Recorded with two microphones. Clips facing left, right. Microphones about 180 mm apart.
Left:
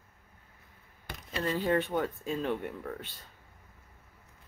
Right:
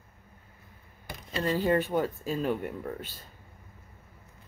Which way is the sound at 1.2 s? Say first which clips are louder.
Right 3 dB; centre (ahead or behind).